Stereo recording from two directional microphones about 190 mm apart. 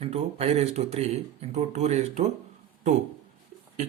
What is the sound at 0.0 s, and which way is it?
Speech, 30° right (ahead or behind).